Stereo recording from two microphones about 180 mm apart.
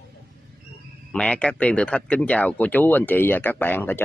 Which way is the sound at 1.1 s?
5° left (ahead or behind).